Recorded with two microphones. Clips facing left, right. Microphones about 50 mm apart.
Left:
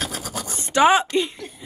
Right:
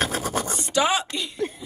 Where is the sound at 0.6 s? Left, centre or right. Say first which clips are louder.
Left 8 dB; left.